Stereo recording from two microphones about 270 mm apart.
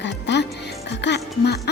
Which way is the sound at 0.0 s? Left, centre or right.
Left.